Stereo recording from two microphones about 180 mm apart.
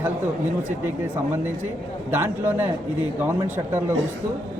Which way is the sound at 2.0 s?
10° right (ahead or behind).